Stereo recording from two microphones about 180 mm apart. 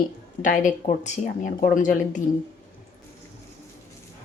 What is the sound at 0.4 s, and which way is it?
Speech, 45° left (ahead or behind).